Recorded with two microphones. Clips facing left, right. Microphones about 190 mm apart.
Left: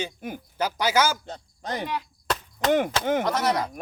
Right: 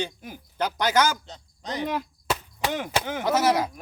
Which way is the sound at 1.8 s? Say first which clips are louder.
Right 3 dB; 45° right (ahead or behind).